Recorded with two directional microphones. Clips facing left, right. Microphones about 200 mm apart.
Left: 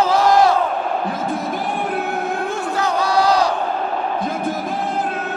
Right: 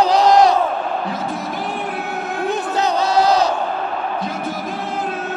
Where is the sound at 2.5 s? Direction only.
20° right (ahead or behind).